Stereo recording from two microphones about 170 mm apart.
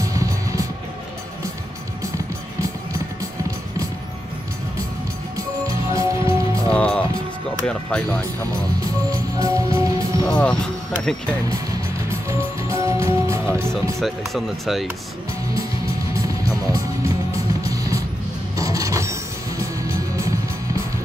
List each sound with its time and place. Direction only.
0.0 s music: 20° right (ahead or behind)
5.7 s music: 20° right (ahead or behind)
6.7 s music: 5° left (ahead or behind)
7.6 s speech: 5° left (ahead or behind)
9.1 s music: 20° right (ahead or behind)
10.2 s speech: 5° left (ahead or behind)
12.1 s music: 15° right (ahead or behind)
13.9 s speech: centre (ahead or behind)
16.2 s music: 20° right (ahead or behind)